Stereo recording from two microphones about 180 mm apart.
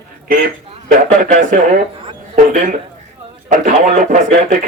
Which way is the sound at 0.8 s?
50° right (ahead or behind).